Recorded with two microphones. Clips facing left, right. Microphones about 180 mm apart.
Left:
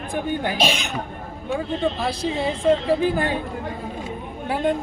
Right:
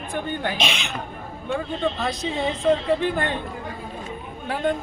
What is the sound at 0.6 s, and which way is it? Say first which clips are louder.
Speech: left 4 dB; 35° left (ahead or behind).